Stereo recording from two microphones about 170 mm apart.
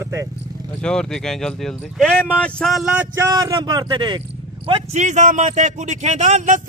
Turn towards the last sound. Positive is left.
turn(degrees=-45)  # may be behind; listen again after turning